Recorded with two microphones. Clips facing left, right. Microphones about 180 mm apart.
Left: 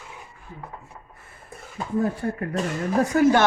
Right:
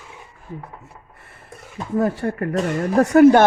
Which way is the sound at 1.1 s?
70° right (ahead or behind).